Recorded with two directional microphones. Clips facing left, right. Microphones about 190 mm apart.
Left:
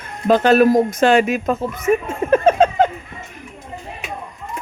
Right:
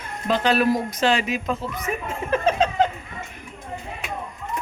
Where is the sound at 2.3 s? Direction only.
50° left (ahead or behind).